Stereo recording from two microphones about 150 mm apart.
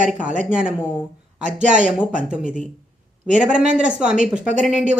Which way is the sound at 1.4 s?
50° right (ahead or behind).